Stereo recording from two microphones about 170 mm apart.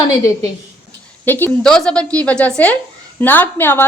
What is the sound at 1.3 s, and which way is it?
A woman's voice, 10° left (ahead or behind).